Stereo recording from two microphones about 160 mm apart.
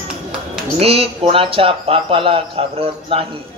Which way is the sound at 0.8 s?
40° right (ahead or behind).